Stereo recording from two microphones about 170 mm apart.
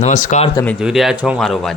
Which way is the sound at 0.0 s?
45° left (ahead or behind).